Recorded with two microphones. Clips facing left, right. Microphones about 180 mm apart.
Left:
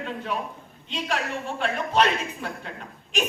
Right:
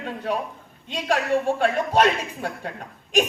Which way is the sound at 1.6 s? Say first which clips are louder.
Right 4 dB; 45° right (ahead or behind).